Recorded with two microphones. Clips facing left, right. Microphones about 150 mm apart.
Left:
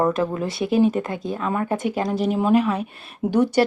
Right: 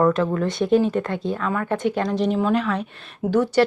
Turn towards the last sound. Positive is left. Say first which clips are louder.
# even
turn(degrees=15)  # may be behind; listen again after turning